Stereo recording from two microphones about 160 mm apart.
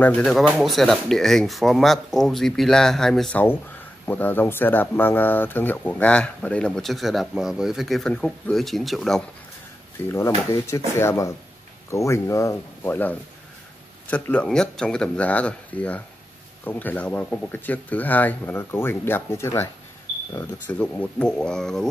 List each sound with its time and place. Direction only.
0.0 s speech: 5° left (ahead or behind)
10.0 s speech: 15° left (ahead or behind)